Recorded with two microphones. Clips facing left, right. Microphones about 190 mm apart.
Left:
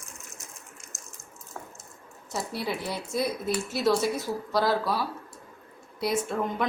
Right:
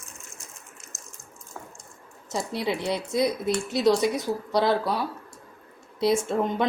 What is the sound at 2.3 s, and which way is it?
A woman's voice, 20° right (ahead or behind).